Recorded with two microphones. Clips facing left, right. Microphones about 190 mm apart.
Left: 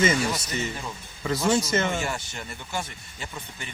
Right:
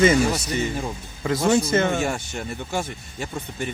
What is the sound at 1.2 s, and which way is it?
Speech, 50° right (ahead or behind).